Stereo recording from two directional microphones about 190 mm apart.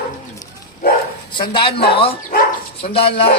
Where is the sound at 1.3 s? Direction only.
25° left (ahead or behind).